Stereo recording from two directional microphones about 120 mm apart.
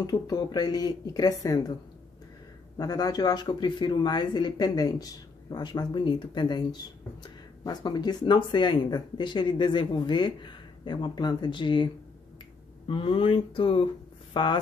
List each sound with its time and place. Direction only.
0.0 s speech: 35° left (ahead or behind)
2.8 s speech: 30° left (ahead or behind)